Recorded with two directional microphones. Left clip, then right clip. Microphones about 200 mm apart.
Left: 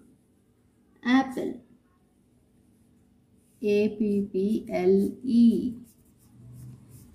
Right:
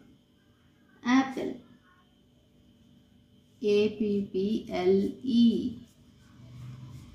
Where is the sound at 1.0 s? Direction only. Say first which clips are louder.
Left 2 dB; 20° left (ahead or behind).